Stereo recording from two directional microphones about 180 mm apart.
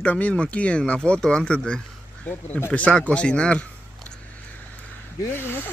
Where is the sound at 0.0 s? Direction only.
10° left (ahead or behind).